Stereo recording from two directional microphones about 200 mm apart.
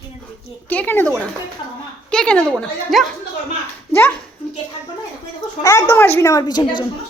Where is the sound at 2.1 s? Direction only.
5° left (ahead or behind).